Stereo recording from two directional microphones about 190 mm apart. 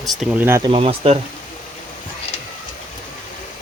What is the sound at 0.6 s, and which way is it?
Speech, 30° right (ahead or behind).